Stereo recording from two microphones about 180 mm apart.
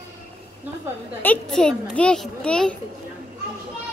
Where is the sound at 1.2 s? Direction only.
5° left (ahead or behind).